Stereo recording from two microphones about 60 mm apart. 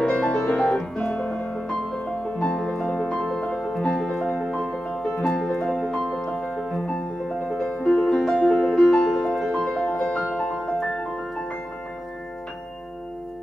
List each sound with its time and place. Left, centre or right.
0.0 s music: centre
6.9 s music: centre
9.7 s music: centre